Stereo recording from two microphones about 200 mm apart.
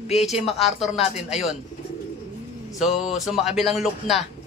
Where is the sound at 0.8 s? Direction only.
35° left (ahead or behind).